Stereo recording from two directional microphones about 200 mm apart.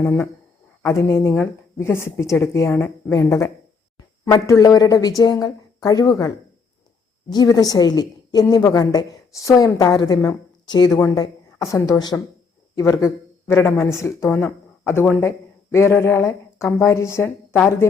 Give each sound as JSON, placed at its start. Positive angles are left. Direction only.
{"t": 0.0, "sound": "a woman's voice", "side_deg": 10}